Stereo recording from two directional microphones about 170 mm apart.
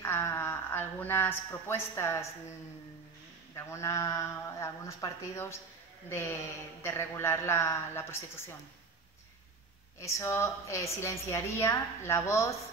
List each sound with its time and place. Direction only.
0.0 s speech: 15° left (ahead or behind)
3.5 s a woman's voice: 15° left (ahead or behind)
9.9 s a woman's voice: 15° left (ahead or behind)